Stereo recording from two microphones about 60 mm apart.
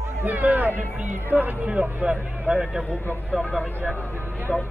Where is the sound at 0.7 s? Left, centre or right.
Left.